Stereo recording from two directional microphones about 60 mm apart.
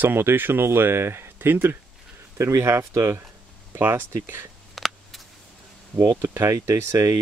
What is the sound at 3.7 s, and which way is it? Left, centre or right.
Speech, right.